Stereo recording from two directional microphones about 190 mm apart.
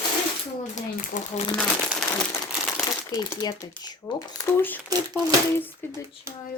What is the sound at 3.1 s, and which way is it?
Speech, 20° left (ahead or behind).